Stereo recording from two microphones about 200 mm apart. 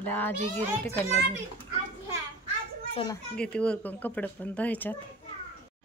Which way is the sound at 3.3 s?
5° left (ahead or behind).